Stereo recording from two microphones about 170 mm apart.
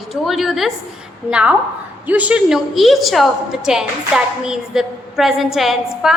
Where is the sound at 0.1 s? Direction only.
Centre (ahead or behind).